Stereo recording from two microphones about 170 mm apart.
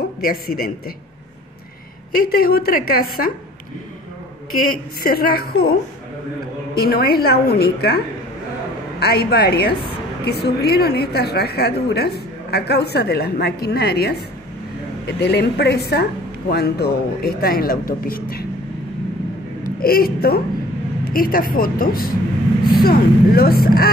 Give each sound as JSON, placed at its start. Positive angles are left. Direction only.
{"t": 0.2, "sound": "a woman's voice", "side_deg": 60}
{"t": 2.2, "sound": "a woman's voice", "side_deg": 65}
{"t": 5.0, "sound": "a woman's voice", "side_deg": 65}
{"t": 9.0, "sound": "a woman's voice", "side_deg": 65}
{"t": 15.1, "sound": "a woman's voice", "side_deg": 75}
{"t": 19.6, "sound": "a woman's voice", "side_deg": 60}